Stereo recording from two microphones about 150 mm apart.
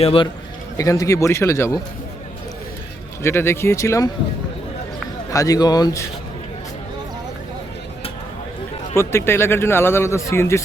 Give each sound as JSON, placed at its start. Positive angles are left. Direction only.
{"t": 0.0, "sound": "a man's voice", "side_deg": 40}
{"t": 0.8, "sound": "a man's voice", "side_deg": 20}
{"t": 3.2, "sound": "speech", "side_deg": 15}
{"t": 5.3, "sound": "a man's voice", "side_deg": 25}
{"t": 9.0, "sound": "speech", "side_deg": 15}